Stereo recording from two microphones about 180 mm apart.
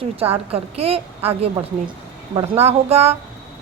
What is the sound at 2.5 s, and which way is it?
Speech, 35° right (ahead or behind).